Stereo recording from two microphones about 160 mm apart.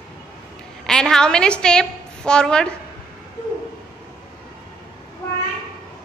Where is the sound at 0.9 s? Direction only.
5° left (ahead or behind).